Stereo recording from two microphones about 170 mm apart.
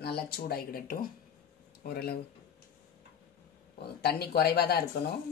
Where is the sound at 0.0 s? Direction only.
70° left (ahead or behind).